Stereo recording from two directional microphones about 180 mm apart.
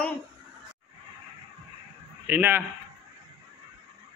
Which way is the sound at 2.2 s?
10° right (ahead or behind).